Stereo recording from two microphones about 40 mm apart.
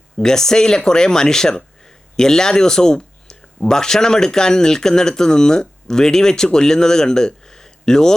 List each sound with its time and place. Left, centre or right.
0.2 s speech: centre